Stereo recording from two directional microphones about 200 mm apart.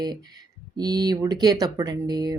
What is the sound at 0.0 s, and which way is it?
A woman's voice, 20° right (ahead or behind).